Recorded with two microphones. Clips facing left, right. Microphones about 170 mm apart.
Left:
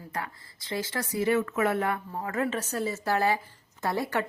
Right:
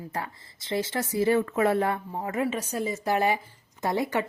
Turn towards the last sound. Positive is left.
turn(degrees=-15)  # may be behind; listen again after turning